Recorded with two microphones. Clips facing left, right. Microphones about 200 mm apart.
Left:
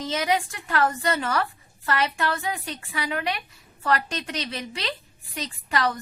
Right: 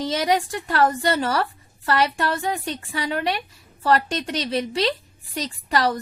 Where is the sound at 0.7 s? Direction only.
30° right (ahead or behind).